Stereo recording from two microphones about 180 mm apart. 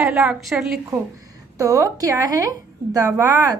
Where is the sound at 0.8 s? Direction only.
20° right (ahead or behind).